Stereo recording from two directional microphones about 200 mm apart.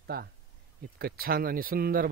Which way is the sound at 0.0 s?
50° right (ahead or behind).